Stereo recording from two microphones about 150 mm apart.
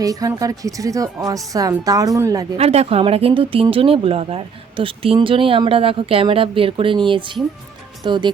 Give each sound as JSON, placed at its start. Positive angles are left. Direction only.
{"t": 0.0, "sound": "speech", "side_deg": -25}
{"t": 2.6, "sound": "speech", "side_deg": -45}